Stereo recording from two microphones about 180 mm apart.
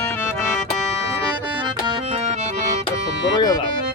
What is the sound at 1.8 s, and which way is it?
Accordion, 25° right (ahead or behind).